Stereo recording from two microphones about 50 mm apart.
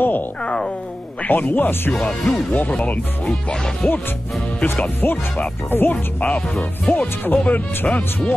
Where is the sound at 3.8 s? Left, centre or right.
Left.